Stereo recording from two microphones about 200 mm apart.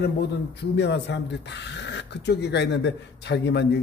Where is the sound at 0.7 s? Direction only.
60° left (ahead or behind).